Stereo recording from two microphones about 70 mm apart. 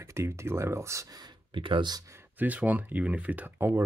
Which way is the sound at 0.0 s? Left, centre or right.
Right.